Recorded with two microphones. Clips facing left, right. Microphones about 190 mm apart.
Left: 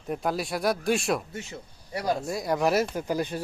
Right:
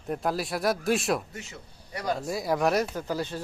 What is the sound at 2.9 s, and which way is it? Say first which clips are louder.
Speech: left 2 dB; 15° left (ahead or behind).